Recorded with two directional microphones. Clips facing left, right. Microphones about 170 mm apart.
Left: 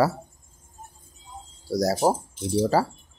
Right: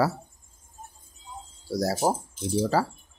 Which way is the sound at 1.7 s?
40° left (ahead or behind).